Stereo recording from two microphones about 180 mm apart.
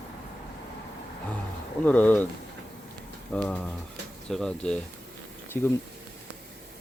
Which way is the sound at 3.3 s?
5° left (ahead or behind).